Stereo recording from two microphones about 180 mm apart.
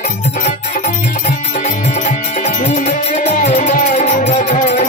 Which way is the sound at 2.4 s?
40° left (ahead or behind).